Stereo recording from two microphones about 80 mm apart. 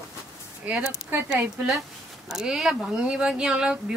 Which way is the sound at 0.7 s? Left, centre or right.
Centre.